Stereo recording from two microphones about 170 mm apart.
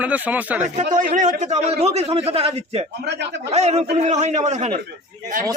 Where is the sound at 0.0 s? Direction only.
10° right (ahead or behind).